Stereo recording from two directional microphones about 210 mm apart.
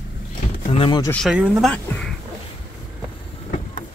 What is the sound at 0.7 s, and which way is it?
Speech, 20° left (ahead or behind).